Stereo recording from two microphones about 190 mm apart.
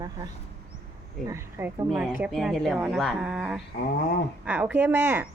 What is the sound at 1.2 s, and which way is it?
Speech, 15° right (ahead or behind).